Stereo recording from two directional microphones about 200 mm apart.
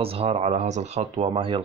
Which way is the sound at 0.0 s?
30° right (ahead or behind).